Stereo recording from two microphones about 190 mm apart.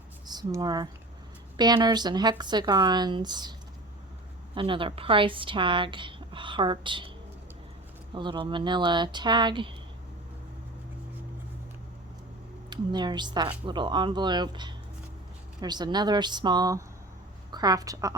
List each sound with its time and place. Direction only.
0.3 s speech: 20° right (ahead or behind)
4.5 s speech: 25° right (ahead or behind)
8.1 s speech: 25° right (ahead or behind)
12.7 s a woman's voice: 25° right (ahead or behind)